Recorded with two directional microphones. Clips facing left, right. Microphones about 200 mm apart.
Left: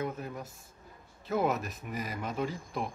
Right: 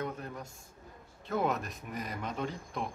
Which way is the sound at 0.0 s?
5° left (ahead or behind).